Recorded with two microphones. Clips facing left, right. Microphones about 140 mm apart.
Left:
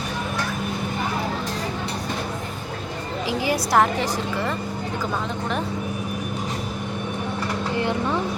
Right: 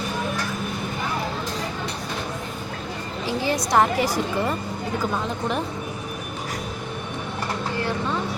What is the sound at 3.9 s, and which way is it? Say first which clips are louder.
Speech: right 2 dB; 10° right (ahead or behind).